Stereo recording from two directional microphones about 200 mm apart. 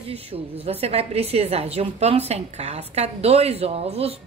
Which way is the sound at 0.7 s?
30° right (ahead or behind).